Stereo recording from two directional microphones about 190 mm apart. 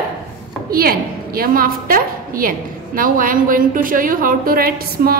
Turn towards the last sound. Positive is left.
turn(degrees=-50)  # may be behind; listen again after turning